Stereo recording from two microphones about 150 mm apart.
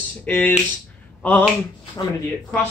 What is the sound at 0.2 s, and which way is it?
Speech, 15° left (ahead or behind).